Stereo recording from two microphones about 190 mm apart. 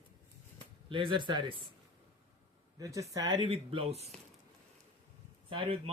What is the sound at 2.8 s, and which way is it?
Speech, 15° right (ahead or behind).